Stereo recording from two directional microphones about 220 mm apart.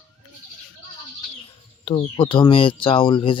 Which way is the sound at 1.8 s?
25° left (ahead or behind).